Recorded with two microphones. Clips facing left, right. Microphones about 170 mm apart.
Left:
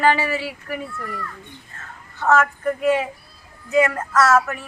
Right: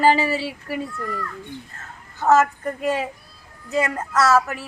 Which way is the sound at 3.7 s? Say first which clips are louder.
Left 4 dB; 35° right (ahead or behind).